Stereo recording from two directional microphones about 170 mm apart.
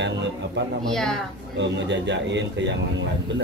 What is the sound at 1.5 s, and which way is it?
A man's voice, 90° right.